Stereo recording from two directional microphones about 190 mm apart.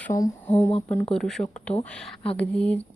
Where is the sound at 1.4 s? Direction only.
25° left (ahead or behind).